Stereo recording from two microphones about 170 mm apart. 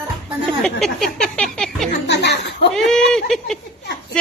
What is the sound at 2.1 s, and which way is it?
Chuckle, 80° left.